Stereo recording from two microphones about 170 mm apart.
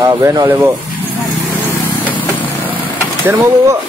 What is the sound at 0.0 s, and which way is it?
Speech, 20° right (ahead or behind).